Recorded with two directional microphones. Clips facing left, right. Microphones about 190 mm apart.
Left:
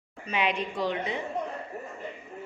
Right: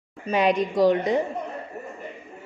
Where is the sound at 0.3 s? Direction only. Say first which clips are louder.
Right 8 dB; 40° right (ahead or behind).